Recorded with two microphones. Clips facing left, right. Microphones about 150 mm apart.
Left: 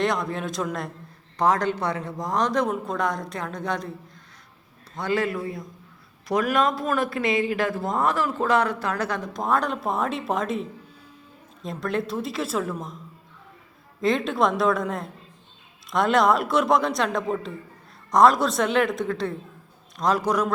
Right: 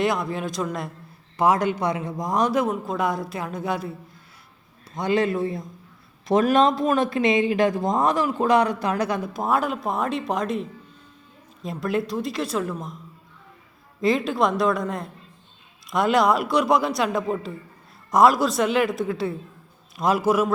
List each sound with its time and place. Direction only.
0.0 s speech: 5° right (ahead or behind)
4.9 s a man's voice: 20° right (ahead or behind); by 13.0 s centre (ahead or behind)
14.0 s speech: centre (ahead or behind)